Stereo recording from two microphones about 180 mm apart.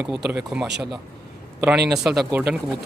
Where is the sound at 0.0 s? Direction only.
5° right (ahead or behind).